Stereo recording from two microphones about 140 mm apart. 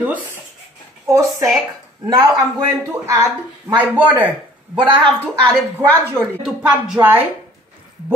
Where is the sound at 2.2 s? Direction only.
25° right (ahead or behind).